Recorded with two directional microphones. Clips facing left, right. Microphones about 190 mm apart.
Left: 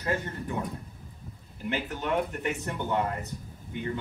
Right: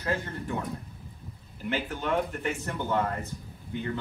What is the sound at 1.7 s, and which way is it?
Speech, 15° left (ahead or behind).